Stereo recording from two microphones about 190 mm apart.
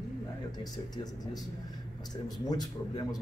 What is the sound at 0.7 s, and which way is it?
Speech, 20° left (ahead or behind).